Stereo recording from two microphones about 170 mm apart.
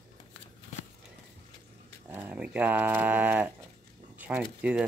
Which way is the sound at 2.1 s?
10° right (ahead or behind).